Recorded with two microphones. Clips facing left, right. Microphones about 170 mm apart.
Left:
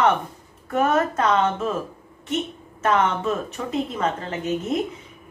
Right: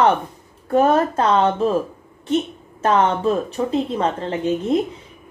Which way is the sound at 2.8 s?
30° right (ahead or behind).